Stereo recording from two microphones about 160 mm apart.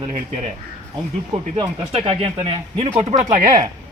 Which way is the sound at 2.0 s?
35° right (ahead or behind).